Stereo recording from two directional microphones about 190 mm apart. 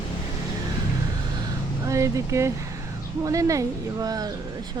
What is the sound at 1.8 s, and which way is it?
Speech, 15° right (ahead or behind).